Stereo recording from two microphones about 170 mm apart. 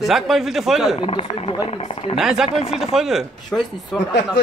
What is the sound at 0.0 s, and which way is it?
Speech, centre (ahead or behind).